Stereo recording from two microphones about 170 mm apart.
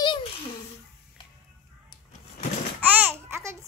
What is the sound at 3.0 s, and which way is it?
Babbling, 15° right (ahead or behind).